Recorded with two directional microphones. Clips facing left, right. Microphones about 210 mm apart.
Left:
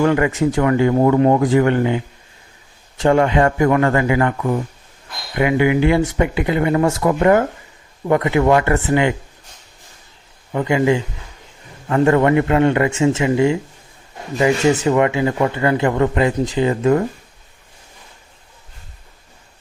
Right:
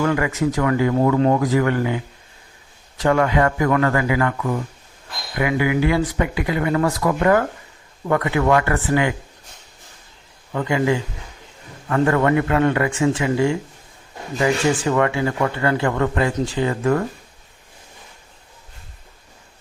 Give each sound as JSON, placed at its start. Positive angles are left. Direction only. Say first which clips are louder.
{"t": 0.0, "sound": "speech", "louder": "left 4 dB", "side_deg": 30}
{"t": 3.0, "sound": "speech", "louder": "left 3 dB", "side_deg": 25}
{"t": 10.5, "sound": "speech", "louder": "left 3 dB", "side_deg": 20}